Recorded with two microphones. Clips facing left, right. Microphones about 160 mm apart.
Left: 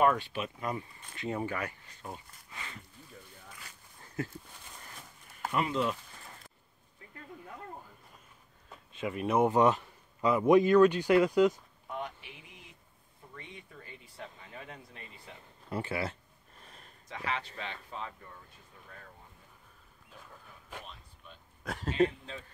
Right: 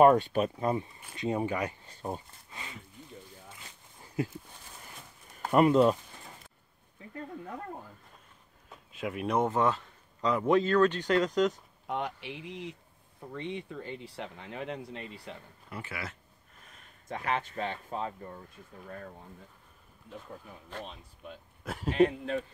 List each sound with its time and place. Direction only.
0.0 s speech: 45° right (ahead or behind)
0.6 s speech: 30° right (ahead or behind)
1.9 s speech: 35° right (ahead or behind)
3.1 s a sound: 25° right (ahead or behind)
5.5 s speech: 50° right (ahead or behind)
8.6 s a sound: centre (ahead or behind)
9.5 s speech: 15° left (ahead or behind)
11.9 s speech: 75° right (ahead or behind)
15.7 s speech: 30° left (ahead or behind)
16.6 s a sound: 35° left (ahead or behind)
17.1 s speech: 50° right (ahead or behind)
21.6 s speech: 10° right (ahead or behind)
22.0 s speech: 65° right (ahead or behind)